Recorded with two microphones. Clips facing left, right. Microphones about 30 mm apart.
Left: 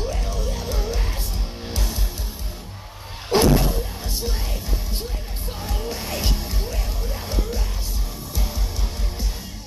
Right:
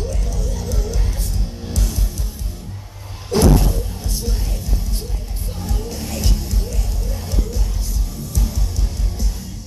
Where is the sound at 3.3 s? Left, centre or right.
Left.